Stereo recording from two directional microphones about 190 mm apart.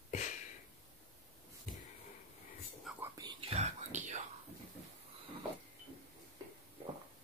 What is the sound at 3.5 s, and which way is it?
Whispering, 40° right (ahead or behind).